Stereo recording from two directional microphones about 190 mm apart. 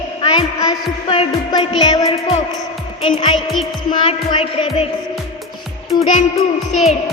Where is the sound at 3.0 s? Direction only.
25° left (ahead or behind).